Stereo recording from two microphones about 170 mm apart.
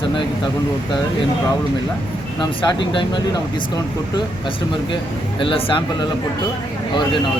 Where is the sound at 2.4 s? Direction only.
25° left (ahead or behind).